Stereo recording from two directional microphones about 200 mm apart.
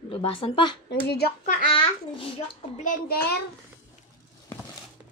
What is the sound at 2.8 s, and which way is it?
Speech, 50° left (ahead or behind).